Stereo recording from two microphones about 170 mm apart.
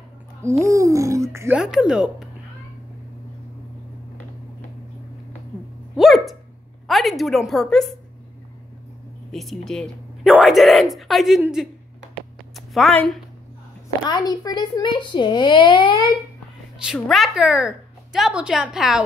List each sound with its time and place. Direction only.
0.4 s speech: 15° right (ahead or behind)
1.6 s a woman's voice: 5° right (ahead or behind)
5.9 s a sound: centre (ahead or behind)
6.9 s a woman's voice: centre (ahead or behind)
9.3 s a woman's voice: centre (ahead or behind)
14.0 s speech: 25° left (ahead or behind)
16.8 s a woman's voice: centre (ahead or behind)